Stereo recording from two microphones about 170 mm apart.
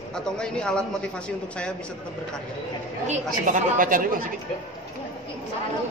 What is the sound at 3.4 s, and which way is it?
Speech, 50° right (ahead or behind).